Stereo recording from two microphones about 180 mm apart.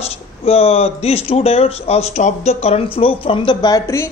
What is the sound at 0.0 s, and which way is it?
A man's voice, 35° left (ahead or behind).